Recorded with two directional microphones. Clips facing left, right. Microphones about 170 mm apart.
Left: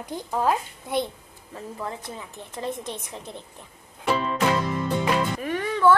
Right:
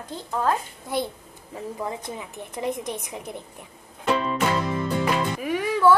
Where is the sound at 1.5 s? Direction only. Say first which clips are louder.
Right 3 dB; 15° right (ahead or behind).